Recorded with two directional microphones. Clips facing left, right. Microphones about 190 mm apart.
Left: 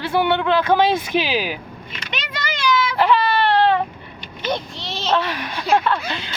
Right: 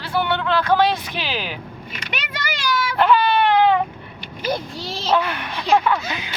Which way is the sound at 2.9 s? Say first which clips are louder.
Right 3 dB; centre (ahead or behind).